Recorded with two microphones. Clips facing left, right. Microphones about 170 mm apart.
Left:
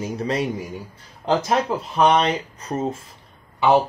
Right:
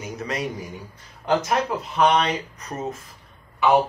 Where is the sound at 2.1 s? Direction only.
30° left (ahead or behind).